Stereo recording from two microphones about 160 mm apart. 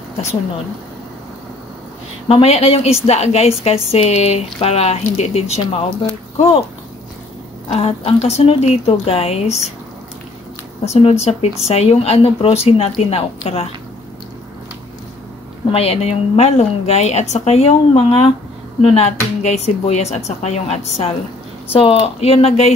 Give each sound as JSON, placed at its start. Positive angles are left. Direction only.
{"t": 2.2, "sound": "a woman's voice", "side_deg": 40}
{"t": 7.7, "sound": "a woman's voice", "side_deg": 40}
{"t": 10.9, "sound": "a woman's voice", "side_deg": 40}
{"t": 15.7, "sound": "a woman's voice", "side_deg": 40}